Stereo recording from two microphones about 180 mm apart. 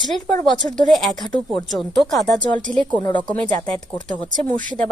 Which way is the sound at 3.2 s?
10° left (ahead or behind).